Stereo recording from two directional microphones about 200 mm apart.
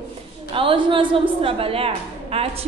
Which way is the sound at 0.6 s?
25° right (ahead or behind).